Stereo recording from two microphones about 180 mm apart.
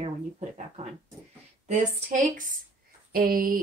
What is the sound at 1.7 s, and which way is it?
Speech, 45° right (ahead or behind).